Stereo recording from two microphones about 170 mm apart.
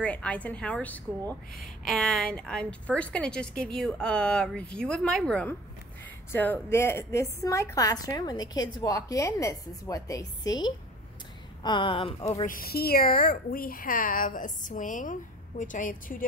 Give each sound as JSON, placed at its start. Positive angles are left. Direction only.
{"t": 0.0, "sound": "a woman's voice", "side_deg": 10}
{"t": 12.4, "sound": "a woman's voice", "side_deg": 60}